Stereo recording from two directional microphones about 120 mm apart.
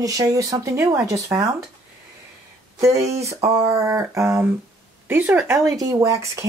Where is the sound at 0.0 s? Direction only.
30° right (ahead or behind).